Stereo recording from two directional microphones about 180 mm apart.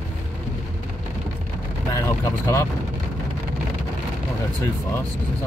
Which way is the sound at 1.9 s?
15° left (ahead or behind).